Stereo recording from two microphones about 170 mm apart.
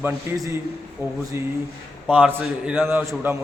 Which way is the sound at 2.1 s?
10° right (ahead or behind).